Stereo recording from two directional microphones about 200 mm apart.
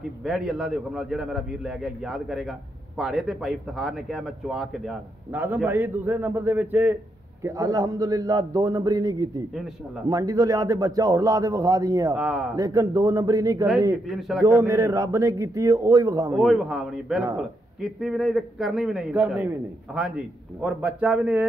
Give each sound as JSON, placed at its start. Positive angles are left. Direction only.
{"t": 0.2, "sound": "a man's voice", "side_deg": 0}
{"t": 12.2, "sound": "a man's voice", "side_deg": 0}
{"t": 12.5, "sound": "speech", "side_deg": -15}
{"t": 14.0, "sound": "a man's voice", "side_deg": 0}
{"t": 14.4, "sound": "speech", "side_deg": -15}
{"t": 16.3, "sound": "a man's voice", "side_deg": 0}